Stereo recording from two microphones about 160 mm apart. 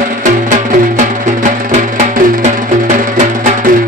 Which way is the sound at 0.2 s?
50° right (ahead or behind).